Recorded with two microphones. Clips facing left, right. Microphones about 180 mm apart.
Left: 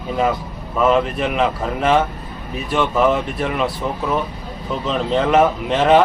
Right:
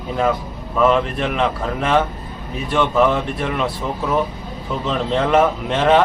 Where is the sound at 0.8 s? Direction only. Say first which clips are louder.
Even; 5° left (ahead or behind).